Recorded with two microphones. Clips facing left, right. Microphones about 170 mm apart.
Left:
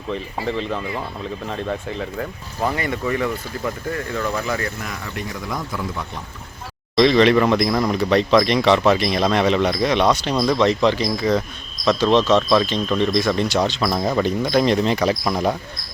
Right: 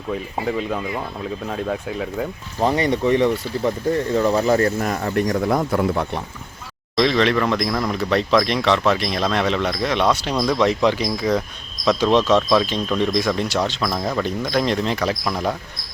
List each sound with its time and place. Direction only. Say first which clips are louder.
0.4 s speech: right 1 dB; 5° right (ahead or behind)
2.6 s speech: right 5 dB; 20° right (ahead or behind); by 6.1 s 60° right (ahead or behind)
6.9 s speech: left 4 dB; centre (ahead or behind)
15.2 s speech: left 2 dB; 15° left (ahead or behind)